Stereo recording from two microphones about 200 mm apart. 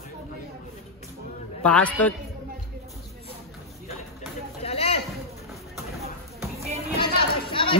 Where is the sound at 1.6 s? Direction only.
5° left (ahead or behind).